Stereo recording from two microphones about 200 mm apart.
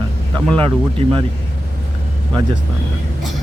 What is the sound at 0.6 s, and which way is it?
Speech, 25° right (ahead or behind).